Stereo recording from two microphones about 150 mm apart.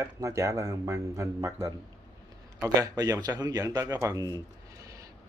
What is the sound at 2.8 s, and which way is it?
Speech, 25° right (ahead or behind).